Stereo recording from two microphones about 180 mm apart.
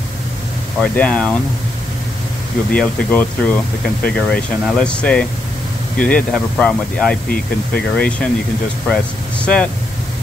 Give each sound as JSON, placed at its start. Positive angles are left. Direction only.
{"t": 0.7, "sound": "speech", "side_deg": 5}
{"t": 2.7, "sound": "speech", "side_deg": 10}